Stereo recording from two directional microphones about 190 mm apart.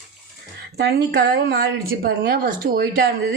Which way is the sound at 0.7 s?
60° right (ahead or behind).